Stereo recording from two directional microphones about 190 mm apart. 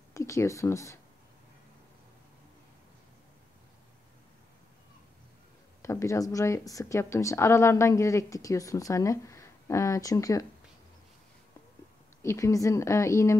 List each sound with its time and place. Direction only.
0.1 s speech: 15° left (ahead or behind)
5.8 s a woman's voice: 15° left (ahead or behind)
12.2 s a woman's voice: 15° left (ahead or behind)